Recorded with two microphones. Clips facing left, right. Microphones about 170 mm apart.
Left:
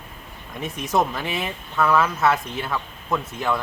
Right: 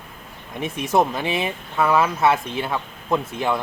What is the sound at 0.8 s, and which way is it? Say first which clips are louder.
Speech: right 3 dB; 25° right (ahead or behind).